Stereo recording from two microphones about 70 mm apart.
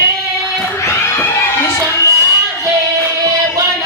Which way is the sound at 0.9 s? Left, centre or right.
Left.